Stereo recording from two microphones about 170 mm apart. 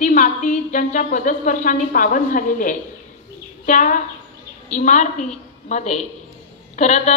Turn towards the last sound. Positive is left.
turn(degrees=45)  # may be behind; listen again after turning